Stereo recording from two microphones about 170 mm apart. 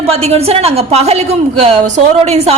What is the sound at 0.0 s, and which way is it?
A woman's voice, 35° right (ahead or behind).